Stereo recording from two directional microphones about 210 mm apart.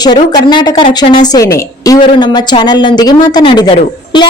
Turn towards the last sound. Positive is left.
turn(degrees=20)  # may be behind; listen again after turning